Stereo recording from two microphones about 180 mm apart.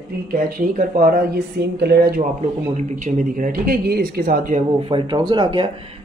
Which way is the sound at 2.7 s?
40° right (ahead or behind).